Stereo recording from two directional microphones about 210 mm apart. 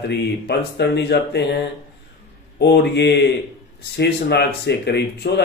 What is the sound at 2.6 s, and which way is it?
Speech, 55° left (ahead or behind).